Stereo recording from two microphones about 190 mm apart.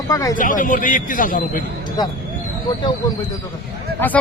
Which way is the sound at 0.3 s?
45° left (ahead or behind).